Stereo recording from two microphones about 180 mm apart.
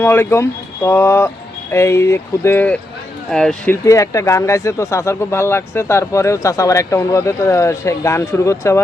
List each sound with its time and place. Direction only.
0.0 s speech: 15° left (ahead or behind)
3.8 s speech: 15° left (ahead or behind)